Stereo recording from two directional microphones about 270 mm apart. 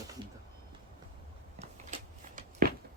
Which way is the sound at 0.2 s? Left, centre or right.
Centre.